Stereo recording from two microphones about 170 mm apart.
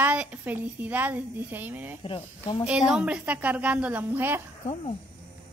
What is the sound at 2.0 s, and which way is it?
Speech, 30° left (ahead or behind).